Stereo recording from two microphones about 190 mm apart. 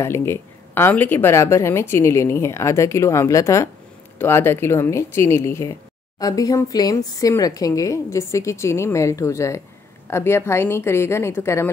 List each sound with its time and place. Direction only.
0.0 s speech: 15° left (ahead or behind)